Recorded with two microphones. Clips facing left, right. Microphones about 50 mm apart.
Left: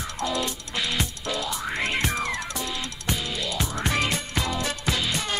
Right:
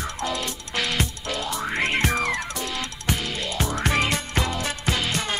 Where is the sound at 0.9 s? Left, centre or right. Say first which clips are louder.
Right 1 dB; right.